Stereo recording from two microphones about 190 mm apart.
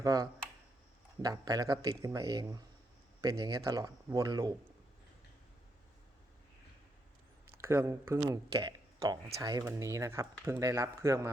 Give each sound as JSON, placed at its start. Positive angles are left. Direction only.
{"t": 0.0, "sound": "speech", "side_deg": -20}
{"t": 7.6, "sound": "speech", "side_deg": -15}